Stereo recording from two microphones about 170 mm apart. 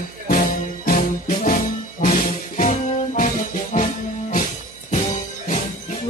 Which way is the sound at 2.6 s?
45° left (ahead or behind).